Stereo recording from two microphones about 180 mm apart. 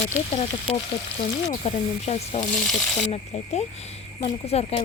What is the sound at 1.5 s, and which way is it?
Speech, 35° left (ahead or behind).